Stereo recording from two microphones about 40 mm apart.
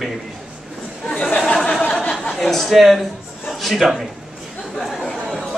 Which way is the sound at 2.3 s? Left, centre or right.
Centre.